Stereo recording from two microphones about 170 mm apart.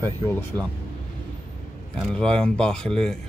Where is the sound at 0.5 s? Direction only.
20° right (ahead or behind).